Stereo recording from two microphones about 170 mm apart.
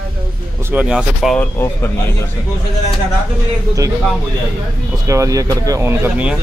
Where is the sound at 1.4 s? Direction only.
15° left (ahead or behind).